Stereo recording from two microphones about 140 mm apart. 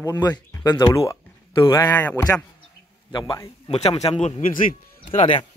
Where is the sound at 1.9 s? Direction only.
15° left (ahead or behind).